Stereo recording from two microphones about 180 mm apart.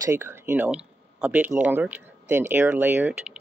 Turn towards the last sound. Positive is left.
turn(degrees=-10)  # may be behind; listen again after turning